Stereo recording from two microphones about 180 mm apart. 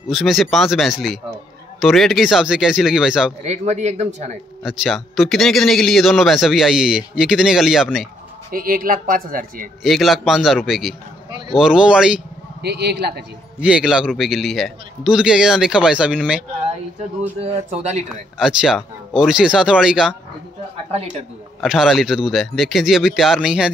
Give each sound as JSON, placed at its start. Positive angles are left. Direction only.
{"t": 0.1, "sound": "speech", "side_deg": 0}
{"t": 3.4, "sound": "speech", "side_deg": -40}
{"t": 4.6, "sound": "speech", "side_deg": 0}
{"t": 8.5, "sound": "speech", "side_deg": -50}
{"t": 9.8, "sound": "speech", "side_deg": 0}
{"t": 12.6, "sound": "a man's voice", "side_deg": -65}
{"t": 13.6, "sound": "speech", "side_deg": -5}
{"t": 17.4, "sound": "speech", "side_deg": -35}
{"t": 18.4, "sound": "speech", "side_deg": -5}
{"t": 20.9, "sound": "speech", "side_deg": -35}
{"t": 21.5, "sound": "speech", "side_deg": 0}